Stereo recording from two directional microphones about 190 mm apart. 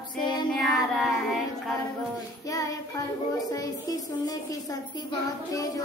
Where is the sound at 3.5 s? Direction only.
20° left (ahead or behind).